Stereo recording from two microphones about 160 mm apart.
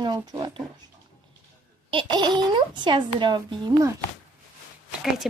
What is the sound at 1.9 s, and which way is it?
Speech, 30° right (ahead or behind).